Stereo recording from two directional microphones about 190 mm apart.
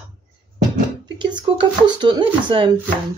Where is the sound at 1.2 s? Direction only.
25° right (ahead or behind).